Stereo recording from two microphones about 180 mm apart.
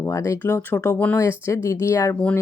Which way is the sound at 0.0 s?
15° left (ahead or behind).